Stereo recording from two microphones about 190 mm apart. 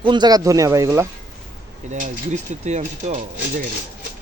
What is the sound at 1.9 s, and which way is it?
Speech, 40° right (ahead or behind).